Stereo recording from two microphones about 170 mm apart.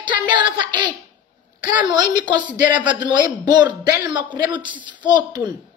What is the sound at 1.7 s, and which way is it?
Speech, 10° right (ahead or behind).